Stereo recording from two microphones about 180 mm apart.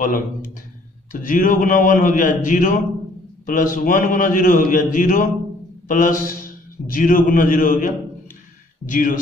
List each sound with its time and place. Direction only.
1.1 s a man's voice: 50° left (ahead or behind)
8.9 s a man's voice: 45° left (ahead or behind)